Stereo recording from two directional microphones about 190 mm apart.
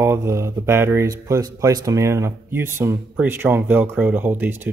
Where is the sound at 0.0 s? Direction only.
15° right (ahead or behind).